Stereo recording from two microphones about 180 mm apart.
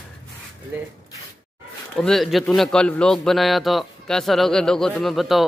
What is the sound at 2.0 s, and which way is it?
A man's voice, centre (ahead or behind).